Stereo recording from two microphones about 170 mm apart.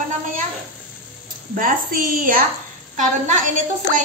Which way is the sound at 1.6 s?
55° right (ahead or behind).